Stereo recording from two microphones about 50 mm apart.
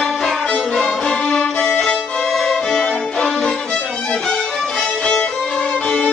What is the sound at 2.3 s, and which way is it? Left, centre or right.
Music, centre.